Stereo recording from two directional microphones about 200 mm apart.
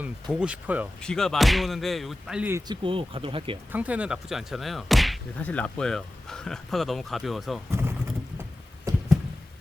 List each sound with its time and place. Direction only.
0.0 s speech: 5° right (ahead or behind)
2.8 s speech: 25° right (ahead or behind)
3.7 s speech: 5° right (ahead or behind)
7.7 s clip-clop: 10° right (ahead or behind)